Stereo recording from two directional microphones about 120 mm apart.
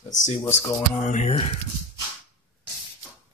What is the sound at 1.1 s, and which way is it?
Speech, 65° left (ahead or behind).